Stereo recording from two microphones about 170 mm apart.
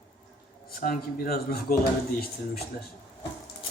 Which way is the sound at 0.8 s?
55° left (ahead or behind).